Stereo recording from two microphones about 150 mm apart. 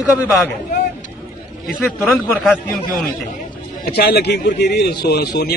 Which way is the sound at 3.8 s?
90° left.